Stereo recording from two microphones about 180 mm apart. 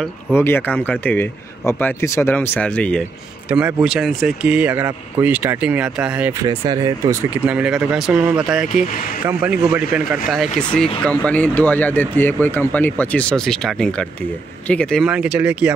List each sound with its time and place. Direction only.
0.3 s speech: 10° left (ahead or behind)
3.4 s speech: 5° right (ahead or behind)
6.4 s speech: 20° right (ahead or behind)
7.4 s speech: 5° right (ahead or behind)
10.7 s speech: 5° left (ahead or behind)